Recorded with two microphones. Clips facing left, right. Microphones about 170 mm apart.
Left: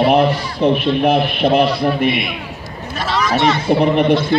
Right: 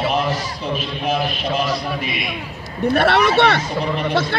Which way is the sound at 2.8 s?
65° right (ahead or behind).